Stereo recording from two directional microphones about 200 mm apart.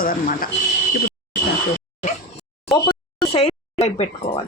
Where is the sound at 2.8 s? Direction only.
30° left (ahead or behind).